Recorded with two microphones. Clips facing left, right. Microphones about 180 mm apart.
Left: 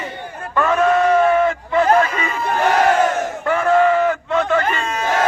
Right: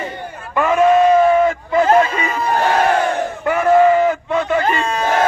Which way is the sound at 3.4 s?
10° right (ahead or behind).